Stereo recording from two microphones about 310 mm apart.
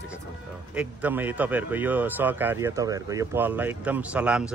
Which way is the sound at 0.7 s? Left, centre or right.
Centre.